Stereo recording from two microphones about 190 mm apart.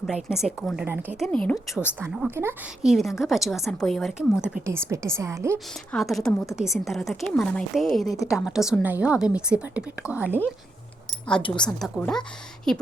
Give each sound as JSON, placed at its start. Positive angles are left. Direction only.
{"t": 0.0, "sound": "a woman's voice", "side_deg": 0}
{"t": 2.0, "sound": "a woman's voice", "side_deg": -10}
{"t": 2.9, "sound": "a woman's voice", "side_deg": 0}
{"t": 5.9, "sound": "a woman's voice", "side_deg": 0}
{"t": 11.4, "sound": "a woman's voice", "side_deg": 25}
{"t": 11.8, "sound": "a woman's voice", "side_deg": 5}